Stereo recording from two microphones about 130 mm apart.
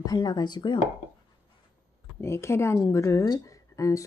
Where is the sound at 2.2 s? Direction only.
20° left (ahead or behind).